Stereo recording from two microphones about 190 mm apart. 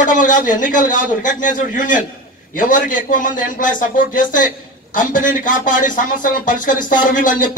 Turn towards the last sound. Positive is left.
turn(degrees=45)  # may be behind; listen again after turning